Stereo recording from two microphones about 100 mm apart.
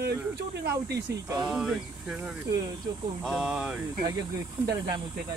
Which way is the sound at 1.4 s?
5° right (ahead or behind).